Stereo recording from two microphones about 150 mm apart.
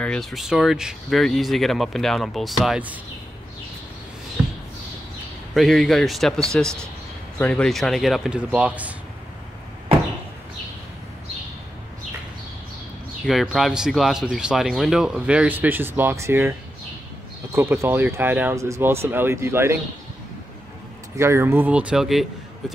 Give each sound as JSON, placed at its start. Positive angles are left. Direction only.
{"t": 0.0, "sound": "speech", "side_deg": 5}
{"t": 5.5, "sound": "speech", "side_deg": 0}
{"t": 13.2, "sound": "speech", "side_deg": 0}
{"t": 21.2, "sound": "speech", "side_deg": -15}